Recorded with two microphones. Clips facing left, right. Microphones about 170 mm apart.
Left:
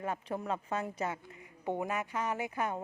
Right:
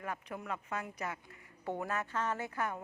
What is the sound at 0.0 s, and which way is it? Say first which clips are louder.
Speech: left 5 dB; 30° left (ahead or behind).